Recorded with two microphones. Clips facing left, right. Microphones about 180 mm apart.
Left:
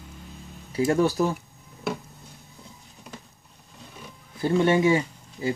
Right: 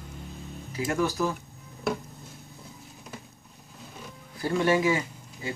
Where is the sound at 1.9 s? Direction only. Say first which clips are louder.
Right 1 dB; centre (ahead or behind).